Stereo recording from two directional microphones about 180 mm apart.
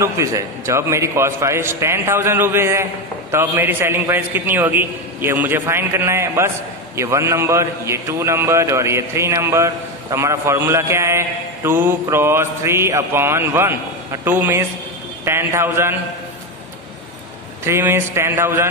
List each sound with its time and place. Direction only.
0.0 s a man's voice: 15° right (ahead or behind)
17.6 s a man's voice: 15° right (ahead or behind)